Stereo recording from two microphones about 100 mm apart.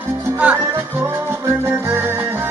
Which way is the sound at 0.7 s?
25° right (ahead or behind).